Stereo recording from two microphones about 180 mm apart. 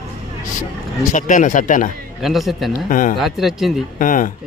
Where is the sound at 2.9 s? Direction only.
50° left (ahead or behind).